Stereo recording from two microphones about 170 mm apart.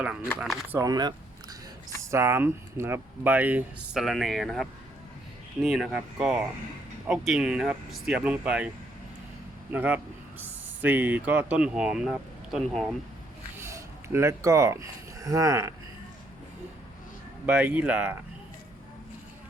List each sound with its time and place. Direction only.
0.0 s speech: 5° right (ahead or behind)
0.7 s speech: 20° right (ahead or behind)
9.7 s speech: 10° right (ahead or behind)
13.6 s speech: 15° right (ahead or behind)
17.4 s speech: 10° right (ahead or behind)